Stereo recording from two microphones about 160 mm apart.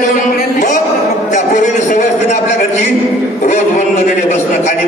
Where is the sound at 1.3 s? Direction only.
50° left (ahead or behind).